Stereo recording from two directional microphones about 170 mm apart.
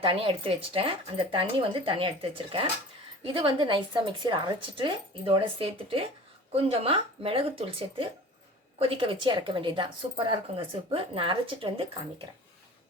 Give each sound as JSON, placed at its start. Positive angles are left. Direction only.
{"t": 0.0, "sound": "speech", "side_deg": -30}